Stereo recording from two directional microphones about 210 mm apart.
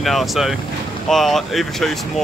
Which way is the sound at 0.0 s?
Centre (ahead or behind).